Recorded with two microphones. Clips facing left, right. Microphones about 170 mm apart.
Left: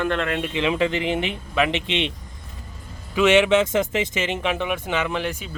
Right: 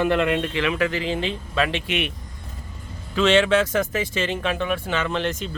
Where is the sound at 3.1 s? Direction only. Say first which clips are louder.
Left 1 dB; 15° left (ahead or behind).